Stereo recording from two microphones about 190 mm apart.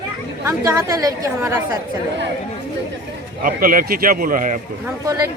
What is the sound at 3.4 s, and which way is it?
Speech, 45° right (ahead or behind).